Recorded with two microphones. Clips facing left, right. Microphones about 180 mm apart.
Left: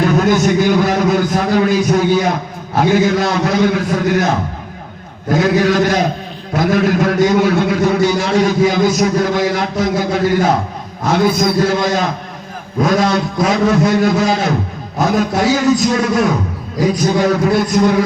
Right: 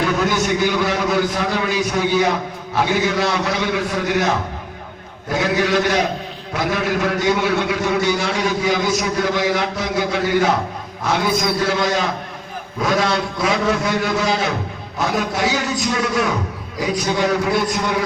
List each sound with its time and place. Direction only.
0.2 s a man's voice: 45° left (ahead or behind)
5.3 s a man's voice: 45° left (ahead or behind)